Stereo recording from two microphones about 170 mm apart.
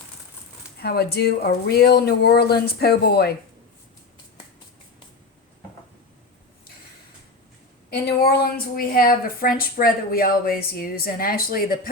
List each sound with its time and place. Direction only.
0.8 s speech: 65° left (ahead or behind)
7.9 s speech: 65° left (ahead or behind)